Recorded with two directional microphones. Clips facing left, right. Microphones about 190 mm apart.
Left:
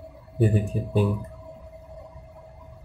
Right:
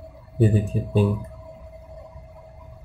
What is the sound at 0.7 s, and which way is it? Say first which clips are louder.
Speech: right 2 dB; 25° right (ahead or behind).